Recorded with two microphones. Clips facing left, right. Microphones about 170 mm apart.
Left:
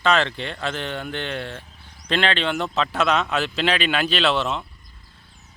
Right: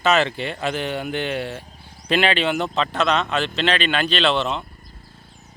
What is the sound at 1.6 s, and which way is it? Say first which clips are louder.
Sheep: right 4 dB; 35° right (ahead or behind).